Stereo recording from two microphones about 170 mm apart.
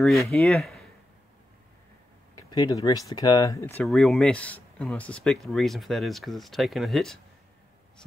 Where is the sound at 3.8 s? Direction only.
Centre (ahead or behind).